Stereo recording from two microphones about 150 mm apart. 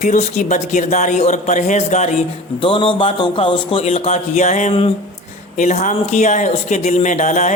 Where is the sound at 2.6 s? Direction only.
35° left (ahead or behind).